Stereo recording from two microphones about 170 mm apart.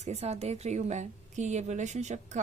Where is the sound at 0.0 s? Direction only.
40° right (ahead or behind).